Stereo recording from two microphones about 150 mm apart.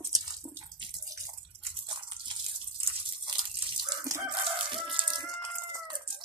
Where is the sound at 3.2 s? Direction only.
30° right (ahead or behind).